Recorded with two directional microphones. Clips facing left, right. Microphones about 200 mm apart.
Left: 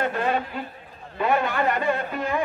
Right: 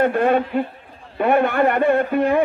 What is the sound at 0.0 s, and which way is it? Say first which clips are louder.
Speech: right 8 dB; 55° right (ahead or behind).